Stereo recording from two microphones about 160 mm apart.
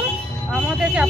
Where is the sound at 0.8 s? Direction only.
5° right (ahead or behind).